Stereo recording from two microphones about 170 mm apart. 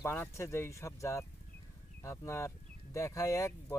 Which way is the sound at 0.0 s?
15° left (ahead or behind).